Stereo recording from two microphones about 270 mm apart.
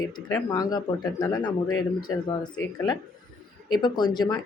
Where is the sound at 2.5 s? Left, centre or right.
Centre.